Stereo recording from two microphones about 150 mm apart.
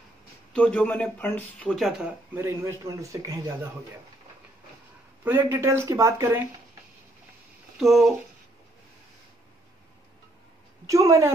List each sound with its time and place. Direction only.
0.5 s speech: 10° left (ahead or behind)
2.3 s speech: 20° right (ahead or behind)
5.2 s speech: 15° right (ahead or behind)
7.8 s speech: centre (ahead or behind)
10.9 s speech: 20° right (ahead or behind)